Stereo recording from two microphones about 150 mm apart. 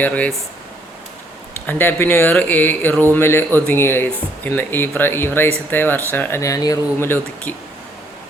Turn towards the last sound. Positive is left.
turn(degrees=15)  # may be behind; listen again after turning